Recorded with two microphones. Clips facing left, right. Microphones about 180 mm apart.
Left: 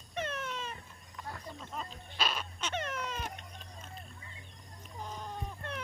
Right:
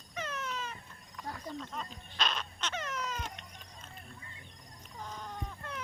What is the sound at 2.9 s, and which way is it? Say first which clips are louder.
Baby cry: even; 55° left (ahead or behind).